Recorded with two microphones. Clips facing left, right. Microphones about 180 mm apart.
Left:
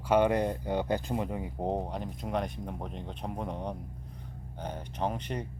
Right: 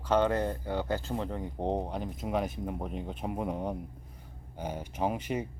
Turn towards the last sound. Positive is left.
turn(degrees=-5)  # may be behind; listen again after turning